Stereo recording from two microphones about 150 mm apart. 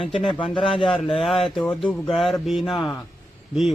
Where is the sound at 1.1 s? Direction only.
Centre (ahead or behind).